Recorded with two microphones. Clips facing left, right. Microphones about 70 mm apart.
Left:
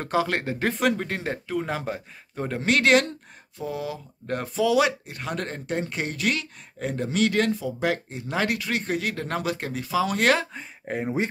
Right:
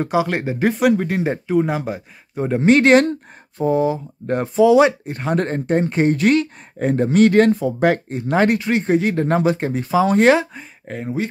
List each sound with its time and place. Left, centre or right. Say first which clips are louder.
0.0 s speech: right 5 dB; centre
1.3 s speech: right 9 dB; centre
2.6 s speech: right 8 dB; right
8.4 s speech: right 9 dB; right
10.9 s speech: right 2 dB; centre